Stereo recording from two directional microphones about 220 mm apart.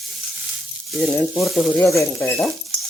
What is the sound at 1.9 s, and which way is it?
Speech, 10° left (ahead or behind).